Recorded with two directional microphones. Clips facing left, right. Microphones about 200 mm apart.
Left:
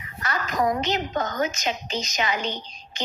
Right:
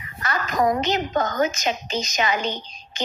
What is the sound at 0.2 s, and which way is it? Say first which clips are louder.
A woman's voice: right 3 dB; 50° right (ahead or behind).